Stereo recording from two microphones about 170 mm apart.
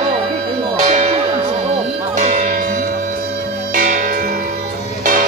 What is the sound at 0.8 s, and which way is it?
Music, 40° right (ahead or behind).